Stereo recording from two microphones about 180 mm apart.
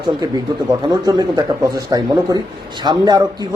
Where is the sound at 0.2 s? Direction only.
20° right (ahead or behind).